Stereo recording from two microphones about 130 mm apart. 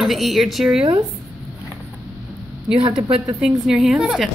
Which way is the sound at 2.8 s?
35° right (ahead or behind).